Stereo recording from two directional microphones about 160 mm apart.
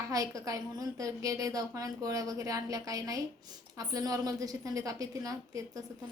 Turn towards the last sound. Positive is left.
turn(degrees=-20)  # may be behind; listen again after turning